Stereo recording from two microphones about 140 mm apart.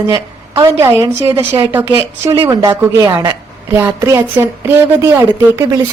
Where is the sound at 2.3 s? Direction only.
40° right (ahead or behind).